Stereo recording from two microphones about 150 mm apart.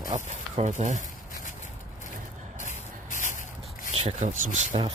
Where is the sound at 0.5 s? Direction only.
50° right (ahead or behind).